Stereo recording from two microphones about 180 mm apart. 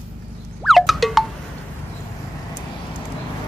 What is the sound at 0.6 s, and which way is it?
Wind chime, centre (ahead or behind).